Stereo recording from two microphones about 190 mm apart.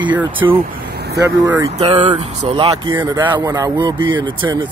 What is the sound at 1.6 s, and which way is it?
Speech, 35° right (ahead or behind).